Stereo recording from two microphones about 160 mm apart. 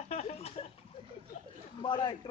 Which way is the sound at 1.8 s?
30° left (ahead or behind).